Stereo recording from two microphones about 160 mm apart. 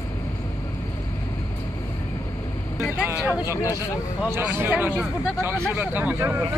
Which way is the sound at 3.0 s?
15° right (ahead or behind).